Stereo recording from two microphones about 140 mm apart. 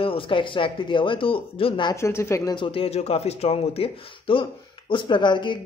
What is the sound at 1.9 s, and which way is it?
Speech, 20° left (ahead or behind).